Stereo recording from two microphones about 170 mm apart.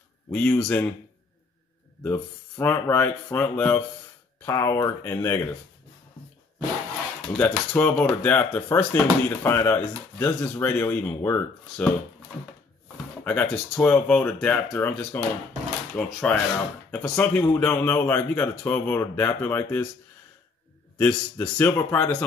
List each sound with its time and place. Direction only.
0.3 s speech: 5° left (ahead or behind)
2.6 s speech: 10° left (ahead or behind)
7.3 s speech: 10° left (ahead or behind)
13.2 s speech: 10° left (ahead or behind)
21.0 s speech: 10° left (ahead or behind)